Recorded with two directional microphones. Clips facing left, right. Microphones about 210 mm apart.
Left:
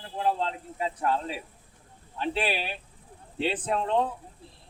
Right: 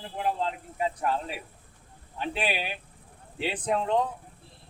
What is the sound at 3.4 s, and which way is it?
Speech, 15° right (ahead or behind).